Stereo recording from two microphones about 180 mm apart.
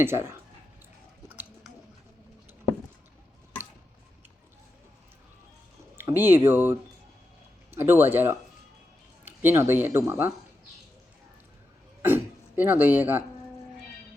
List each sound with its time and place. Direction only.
0.0 s speech: 15° right (ahead or behind)
6.0 s speech: 10° right (ahead or behind)
12.0 s speech: 10° right (ahead or behind)